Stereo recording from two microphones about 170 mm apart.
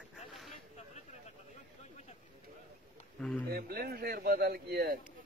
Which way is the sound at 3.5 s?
65° right (ahead or behind).